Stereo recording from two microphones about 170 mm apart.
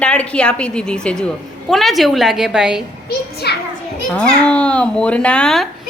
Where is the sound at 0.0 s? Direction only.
5° left (ahead or behind).